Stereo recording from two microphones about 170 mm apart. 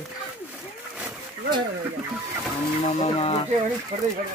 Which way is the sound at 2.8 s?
35° left (ahead or behind).